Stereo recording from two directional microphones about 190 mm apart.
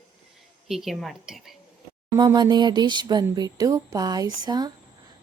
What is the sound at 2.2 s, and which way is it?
Speech, 20° right (ahead or behind).